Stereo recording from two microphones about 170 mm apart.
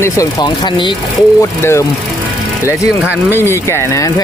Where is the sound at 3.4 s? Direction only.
15° left (ahead or behind).